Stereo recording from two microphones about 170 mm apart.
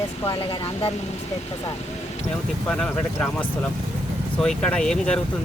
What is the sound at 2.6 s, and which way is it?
Speech, 5° left (ahead or behind).